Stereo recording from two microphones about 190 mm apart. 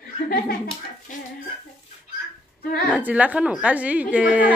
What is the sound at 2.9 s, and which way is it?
A woman's voice, 10° right (ahead or behind).